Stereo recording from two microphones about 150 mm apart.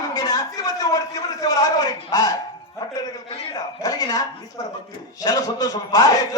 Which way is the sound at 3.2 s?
40° left (ahead or behind).